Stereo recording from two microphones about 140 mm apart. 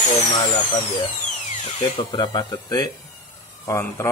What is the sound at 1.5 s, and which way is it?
Tools, 55° left (ahead or behind).